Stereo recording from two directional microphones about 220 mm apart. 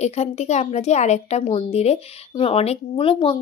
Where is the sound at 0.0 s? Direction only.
30° left (ahead or behind).